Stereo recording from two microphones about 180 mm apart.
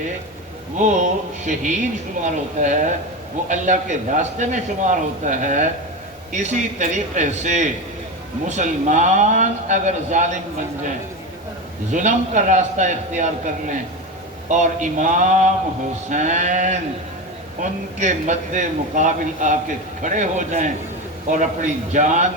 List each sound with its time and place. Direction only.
0.8 s a man's voice: 45° right (ahead or behind)
11.9 s a man's voice: 45° right (ahead or behind)